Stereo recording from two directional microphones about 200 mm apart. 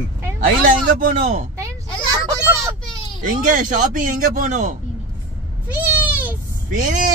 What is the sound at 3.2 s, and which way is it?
Speech, 40° right (ahead or behind).